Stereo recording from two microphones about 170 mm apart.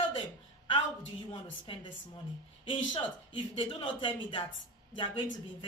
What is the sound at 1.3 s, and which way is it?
Speech, 30° left (ahead or behind).